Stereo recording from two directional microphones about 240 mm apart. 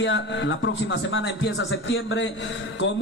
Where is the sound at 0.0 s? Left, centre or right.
Left.